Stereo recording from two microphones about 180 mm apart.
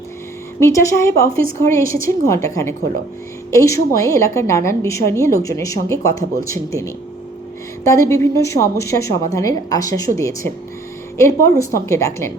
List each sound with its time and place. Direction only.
0.6 s a woman's voice: 15° left (ahead or behind)
11.6 s a woman's voice: 15° left (ahead or behind)